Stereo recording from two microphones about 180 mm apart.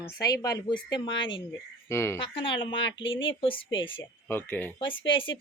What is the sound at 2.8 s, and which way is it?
Speech, 90° left.